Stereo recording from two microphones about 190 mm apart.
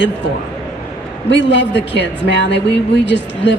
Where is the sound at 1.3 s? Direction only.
70° left (ahead or behind).